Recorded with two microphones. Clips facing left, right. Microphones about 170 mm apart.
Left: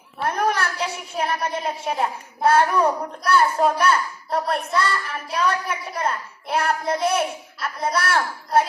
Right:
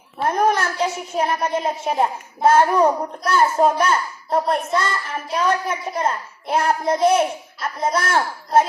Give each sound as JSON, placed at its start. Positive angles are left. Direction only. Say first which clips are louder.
{"t": 0.2, "sound": "a child's voice", "louder": "right 4 dB", "side_deg": -25}